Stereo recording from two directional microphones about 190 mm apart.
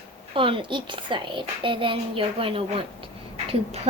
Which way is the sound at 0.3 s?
25° right (ahead or behind).